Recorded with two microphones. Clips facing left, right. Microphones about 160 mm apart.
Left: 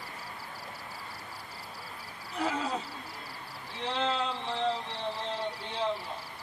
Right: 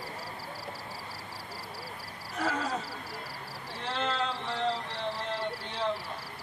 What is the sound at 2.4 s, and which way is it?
Wild animals, 20° left (ahead or behind).